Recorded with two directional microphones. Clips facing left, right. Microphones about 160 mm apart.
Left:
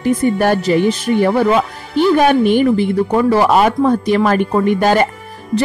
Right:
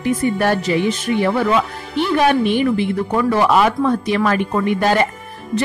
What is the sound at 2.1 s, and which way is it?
A woman's voice, 45° left (ahead or behind).